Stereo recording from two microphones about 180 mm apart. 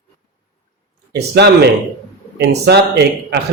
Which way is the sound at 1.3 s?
65° right (ahead or behind).